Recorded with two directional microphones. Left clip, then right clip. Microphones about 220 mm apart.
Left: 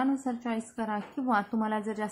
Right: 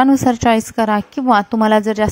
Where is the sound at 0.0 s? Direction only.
45° right (ahead or behind).